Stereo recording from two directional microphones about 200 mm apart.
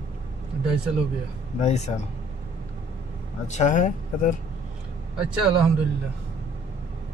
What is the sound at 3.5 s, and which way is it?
Speech, 40° left (ahead or behind).